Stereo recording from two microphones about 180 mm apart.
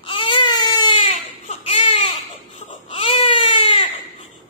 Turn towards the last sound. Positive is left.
turn(degrees=30)  # may be behind; listen again after turning